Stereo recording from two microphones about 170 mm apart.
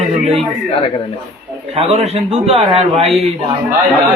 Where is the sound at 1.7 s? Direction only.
40° right (ahead or behind).